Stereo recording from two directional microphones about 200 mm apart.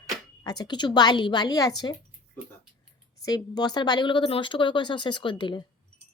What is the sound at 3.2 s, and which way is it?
Speech, 20° left (ahead or behind).